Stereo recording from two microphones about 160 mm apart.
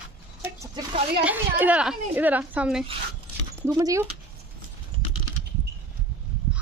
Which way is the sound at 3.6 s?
20° right (ahead or behind).